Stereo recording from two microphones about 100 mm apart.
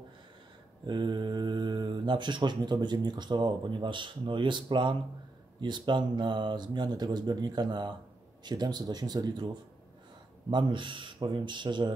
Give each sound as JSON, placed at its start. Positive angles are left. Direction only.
{"t": 0.8, "sound": "speech", "side_deg": -50}